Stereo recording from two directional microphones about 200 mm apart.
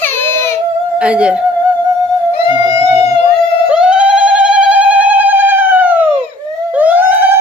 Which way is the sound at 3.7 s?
5° right (ahead or behind).